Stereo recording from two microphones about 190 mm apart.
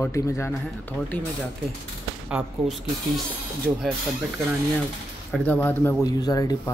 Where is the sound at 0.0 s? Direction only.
15° left (ahead or behind).